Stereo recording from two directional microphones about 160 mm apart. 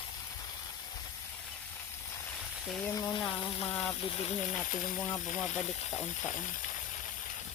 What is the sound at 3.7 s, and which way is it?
Speech, 10° left (ahead or behind).